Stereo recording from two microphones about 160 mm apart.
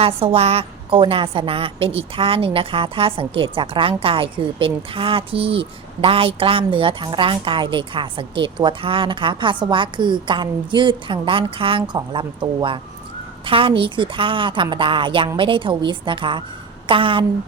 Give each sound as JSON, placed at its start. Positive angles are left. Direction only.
{"t": 0.0, "sound": "a woman's voice", "side_deg": -40}